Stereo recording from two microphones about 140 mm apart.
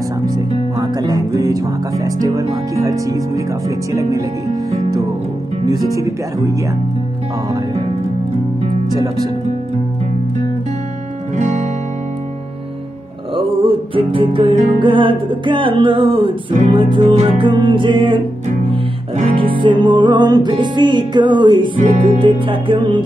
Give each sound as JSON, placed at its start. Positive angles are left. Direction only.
{"t": 0.3, "sound": "music", "side_deg": -30}
{"t": 2.0, "sound": "speech", "side_deg": -25}
{"t": 5.7, "sound": "speech", "side_deg": -25}
{"t": 8.9, "sound": "speech", "side_deg": -25}
{"t": 11.3, "sound": "music", "side_deg": -60}
{"t": 13.4, "sound": "music", "side_deg": -40}
{"t": 19.3, "sound": "music", "side_deg": -35}